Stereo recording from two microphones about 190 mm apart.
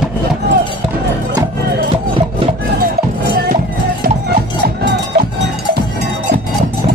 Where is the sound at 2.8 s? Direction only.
55° right (ahead or behind).